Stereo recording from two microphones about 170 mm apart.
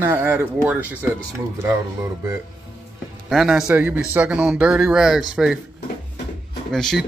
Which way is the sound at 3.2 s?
Centre (ahead or behind).